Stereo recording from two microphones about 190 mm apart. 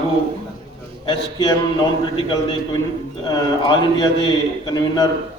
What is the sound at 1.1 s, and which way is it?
A man's voice, 20° left (ahead or behind).